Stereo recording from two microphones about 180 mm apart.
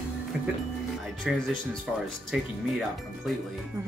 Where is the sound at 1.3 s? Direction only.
Centre (ahead or behind).